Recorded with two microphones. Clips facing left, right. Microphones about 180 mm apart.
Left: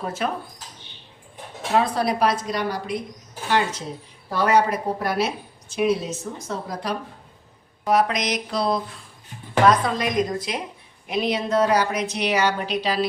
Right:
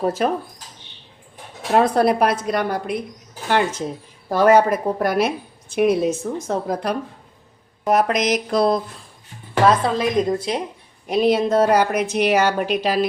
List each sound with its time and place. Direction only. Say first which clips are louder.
0.0 s speech: right 7 dB; 40° right (ahead or behind)
1.7 s a woman's voice: right 5 dB; 50° right (ahead or behind)
8.1 s a sound: right 6 dB; 5° right (ahead or behind)
8.4 s a woman's voice: right 5 dB; 50° right (ahead or behind)
9.6 s a woman's voice: right 2 dB; 30° right (ahead or behind)
11.1 s a woman's voice: right 6 dB; 40° right (ahead or behind)